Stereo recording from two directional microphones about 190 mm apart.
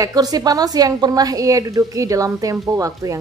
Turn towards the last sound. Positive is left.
turn(degrees=-15)  # may be behind; listen again after turning